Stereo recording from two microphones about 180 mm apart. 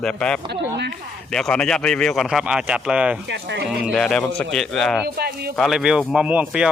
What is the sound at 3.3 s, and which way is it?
Speech, 70° right (ahead or behind).